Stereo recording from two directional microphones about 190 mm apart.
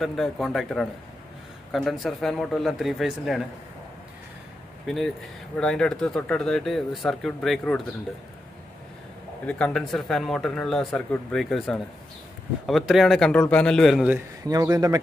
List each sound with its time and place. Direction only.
0.0 s speech: centre (ahead or behind)
4.8 s speech: centre (ahead or behind)
9.5 s speech: 5° left (ahead or behind)
14.4 s speech: 20° right (ahead or behind)